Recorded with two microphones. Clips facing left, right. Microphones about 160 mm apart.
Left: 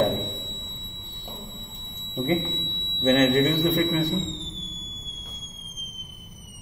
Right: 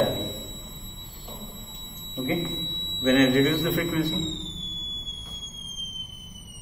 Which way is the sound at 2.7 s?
20° left (ahead or behind).